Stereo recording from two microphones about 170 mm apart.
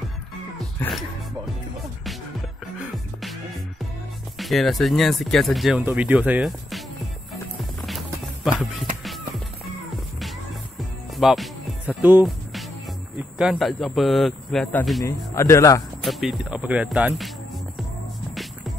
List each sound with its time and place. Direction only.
0.7 s music: centre (ahead or behind)
2.8 s music: centre (ahead or behind)
4.4 s speech: centre (ahead or behind)
8.5 s music: 5° right (ahead or behind)
11.1 s music: centre (ahead or behind)
12.0 s speech: 10° right (ahead or behind)
13.4 s a man's voice: centre (ahead or behind); by 15.8 s 20° left (ahead or behind)
16.0 s speech: centre (ahead or behind)